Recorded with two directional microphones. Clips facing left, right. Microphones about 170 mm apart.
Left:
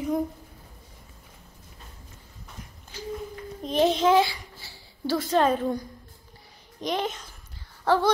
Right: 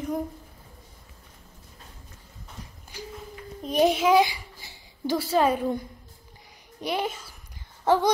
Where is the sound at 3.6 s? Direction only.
10° right (ahead or behind).